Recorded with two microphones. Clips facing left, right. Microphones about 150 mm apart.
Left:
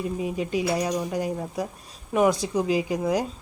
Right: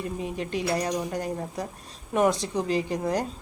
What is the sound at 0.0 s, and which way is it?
A woman's voice, 5° left (ahead or behind).